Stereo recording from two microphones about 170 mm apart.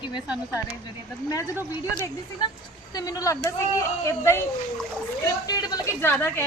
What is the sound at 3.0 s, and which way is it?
A woman's voice, 20° left (ahead or behind).